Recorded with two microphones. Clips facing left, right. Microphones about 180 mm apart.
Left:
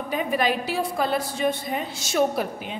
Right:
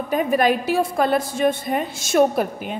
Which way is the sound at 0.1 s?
45° right (ahead or behind).